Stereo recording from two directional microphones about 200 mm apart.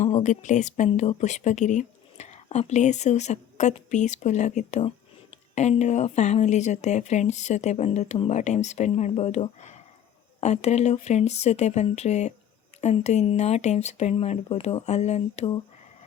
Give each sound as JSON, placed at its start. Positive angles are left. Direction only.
{"t": 0.0, "sound": "speech", "side_deg": 35}